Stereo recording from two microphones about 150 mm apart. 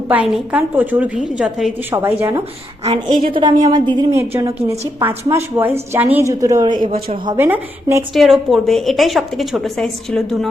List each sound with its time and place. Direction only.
0.1 s a woman's voice: 10° right (ahead or behind)
1.9 s a woman's voice: 15° right (ahead or behind)
3.1 s a woman's voice: 60° right (ahead or behind)
3.7 s a woman's voice: 30° right (ahead or behind)
4.1 s a woman's voice: 15° right (ahead or behind)
7.3 s a woman's voice: 15° right (ahead or behind)
8.1 s a woman's voice: centre (ahead or behind)